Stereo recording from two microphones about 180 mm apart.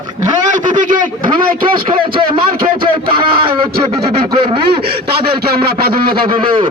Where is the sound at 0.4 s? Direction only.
45° right (ahead or behind).